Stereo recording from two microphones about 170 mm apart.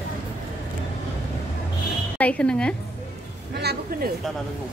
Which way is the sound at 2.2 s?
5° left (ahead or behind).